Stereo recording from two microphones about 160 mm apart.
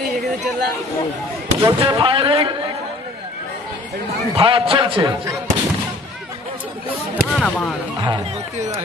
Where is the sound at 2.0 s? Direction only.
30° right (ahead or behind).